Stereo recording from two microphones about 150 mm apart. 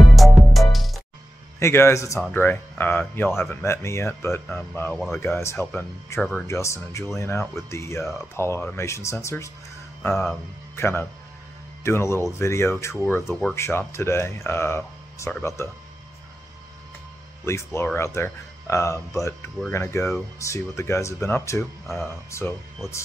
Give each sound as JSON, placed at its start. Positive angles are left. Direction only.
{"t": 0.1, "sound": "music", "side_deg": 0}
{"t": 1.6, "sound": "speech", "side_deg": 15}
{"t": 17.5, "sound": "speech", "side_deg": 20}
{"t": 21.8, "sound": "speech", "side_deg": 0}
{"t": 22.3, "sound": "speech", "side_deg": 15}